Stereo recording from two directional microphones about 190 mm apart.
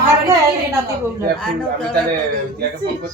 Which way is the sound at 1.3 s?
Centre (ahead or behind).